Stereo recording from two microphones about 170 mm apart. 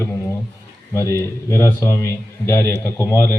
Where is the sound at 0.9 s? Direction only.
15° left (ahead or behind).